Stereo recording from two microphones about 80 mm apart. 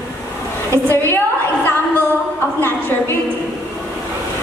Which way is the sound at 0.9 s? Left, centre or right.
Left.